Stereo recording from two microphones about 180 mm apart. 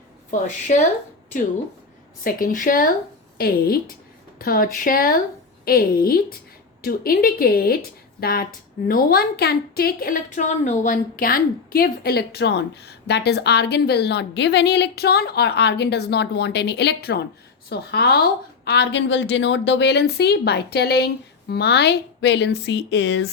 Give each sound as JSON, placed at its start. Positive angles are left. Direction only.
{"t": 0.3, "sound": "speech", "side_deg": 45}
{"t": 2.2, "sound": "a woman's voice", "side_deg": 50}